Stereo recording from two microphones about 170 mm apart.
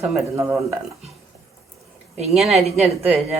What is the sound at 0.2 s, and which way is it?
Speech, 15° right (ahead or behind).